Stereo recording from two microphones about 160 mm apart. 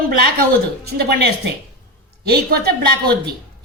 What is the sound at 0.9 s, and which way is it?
A woman's voice, 90° right.